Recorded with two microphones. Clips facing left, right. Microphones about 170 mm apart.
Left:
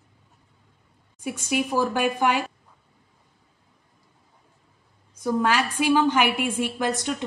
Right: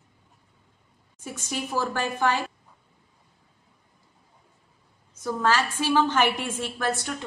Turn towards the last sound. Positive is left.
turn(degrees=20)  # may be behind; listen again after turning